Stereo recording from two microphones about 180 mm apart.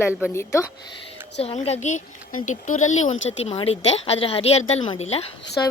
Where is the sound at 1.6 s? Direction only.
40° left (ahead or behind).